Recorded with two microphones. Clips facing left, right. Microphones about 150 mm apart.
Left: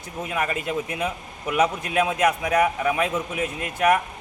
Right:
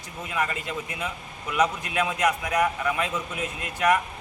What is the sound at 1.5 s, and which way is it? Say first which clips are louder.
A man's voice: left 3 dB; 50° left (ahead or behind).